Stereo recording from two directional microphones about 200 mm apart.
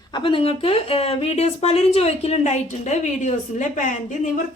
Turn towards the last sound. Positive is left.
turn(degrees=40)  # may be behind; listen again after turning